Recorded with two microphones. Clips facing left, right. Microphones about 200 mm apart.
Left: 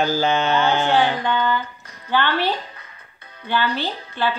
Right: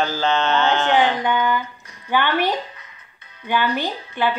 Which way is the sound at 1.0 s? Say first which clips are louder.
Right 1 dB; 15° right (ahead or behind).